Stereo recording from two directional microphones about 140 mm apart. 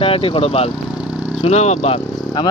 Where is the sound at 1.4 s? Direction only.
50° left (ahead or behind).